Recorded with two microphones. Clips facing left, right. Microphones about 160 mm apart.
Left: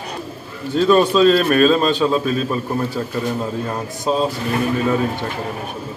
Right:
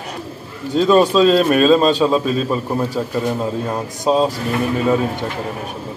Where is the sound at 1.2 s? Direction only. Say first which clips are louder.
Right 1 dB; 10° right (ahead or behind).